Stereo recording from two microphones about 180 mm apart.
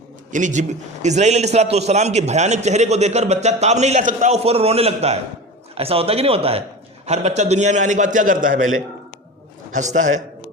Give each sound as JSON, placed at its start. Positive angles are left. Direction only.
{"t": 0.3, "sound": "a man's voice", "side_deg": -45}
{"t": 9.7, "sound": "a man's voice", "side_deg": -45}